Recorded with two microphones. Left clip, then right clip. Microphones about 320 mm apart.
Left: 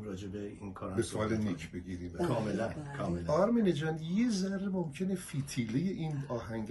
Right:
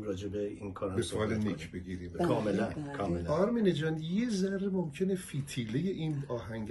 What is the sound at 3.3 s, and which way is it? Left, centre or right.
Speech, centre.